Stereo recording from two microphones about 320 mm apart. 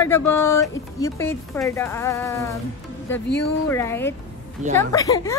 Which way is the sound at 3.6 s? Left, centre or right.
Centre.